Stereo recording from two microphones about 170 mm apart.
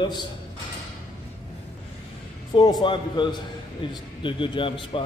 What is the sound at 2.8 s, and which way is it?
A man's voice, 25° left (ahead or behind).